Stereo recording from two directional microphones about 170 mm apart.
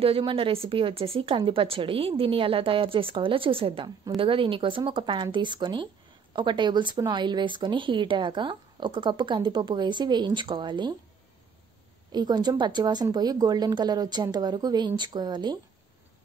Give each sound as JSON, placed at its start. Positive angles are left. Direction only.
{"t": 0.0, "sound": "a woman's voice", "side_deg": -30}
{"t": 12.1, "sound": "a woman's voice", "side_deg": -25}